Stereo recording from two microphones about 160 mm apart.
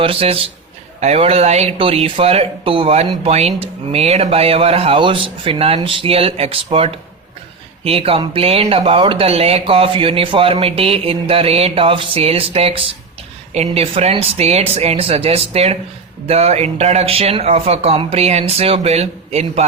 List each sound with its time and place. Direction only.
0.0 s speech: 35° right (ahead or behind)